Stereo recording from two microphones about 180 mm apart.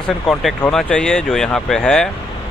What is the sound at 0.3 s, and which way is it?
Speech, centre (ahead or behind).